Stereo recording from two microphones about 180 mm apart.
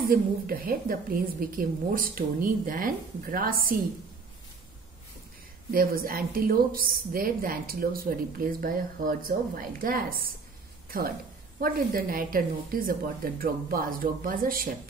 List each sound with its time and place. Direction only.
0.1 s a woman's voice: 55° right (ahead or behind)
5.7 s a woman's voice: 55° right (ahead or behind)